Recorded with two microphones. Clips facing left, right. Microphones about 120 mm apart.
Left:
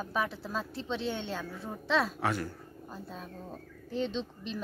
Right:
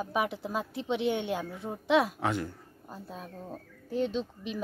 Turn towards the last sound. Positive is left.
turn(degrees=-5)  # may be behind; listen again after turning